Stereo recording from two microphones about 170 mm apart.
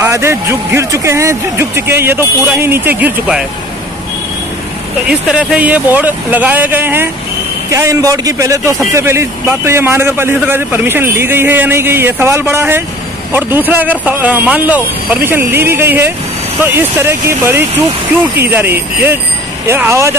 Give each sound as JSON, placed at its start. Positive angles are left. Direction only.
{"t": 0.0, "sound": "a man's voice", "side_deg": -15}
{"t": 5.0, "sound": "a man's voice", "side_deg": -5}